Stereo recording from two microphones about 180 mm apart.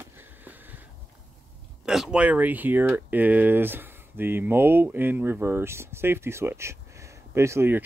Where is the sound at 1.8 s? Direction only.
5° right (ahead or behind).